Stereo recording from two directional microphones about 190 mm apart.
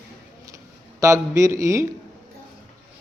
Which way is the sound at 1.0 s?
15° right (ahead or behind).